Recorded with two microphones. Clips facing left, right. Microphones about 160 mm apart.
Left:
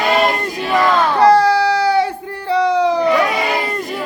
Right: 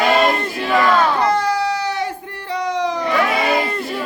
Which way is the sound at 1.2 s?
30° left (ahead or behind).